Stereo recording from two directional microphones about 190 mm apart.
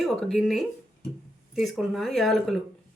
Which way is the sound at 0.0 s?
Centre (ahead or behind).